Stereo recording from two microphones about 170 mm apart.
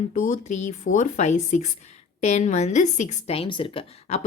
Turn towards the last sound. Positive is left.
turn(degrees=30)  # may be behind; listen again after turning